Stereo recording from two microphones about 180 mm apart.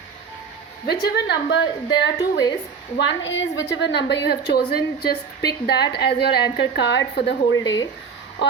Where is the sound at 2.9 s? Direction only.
90° left.